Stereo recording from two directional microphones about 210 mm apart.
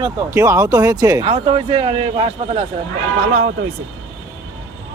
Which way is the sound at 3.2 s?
45° right (ahead or behind).